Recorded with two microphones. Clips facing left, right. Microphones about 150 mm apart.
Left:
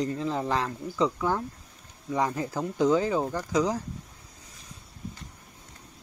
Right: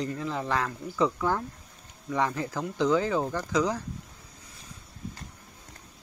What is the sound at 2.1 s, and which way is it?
Speech, 30° left (ahead or behind).